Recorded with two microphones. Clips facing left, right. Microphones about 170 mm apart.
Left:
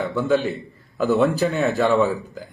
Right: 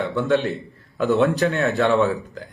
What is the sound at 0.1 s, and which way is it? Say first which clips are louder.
A man's voice: even; centre (ahead or behind).